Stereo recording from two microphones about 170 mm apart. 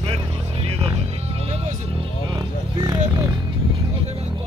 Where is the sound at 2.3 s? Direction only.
20° right (ahead or behind).